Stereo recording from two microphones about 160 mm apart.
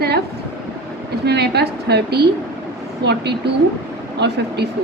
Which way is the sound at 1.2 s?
90° right.